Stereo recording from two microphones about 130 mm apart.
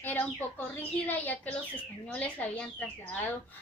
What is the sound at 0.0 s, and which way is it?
Speech, 15° left (ahead or behind).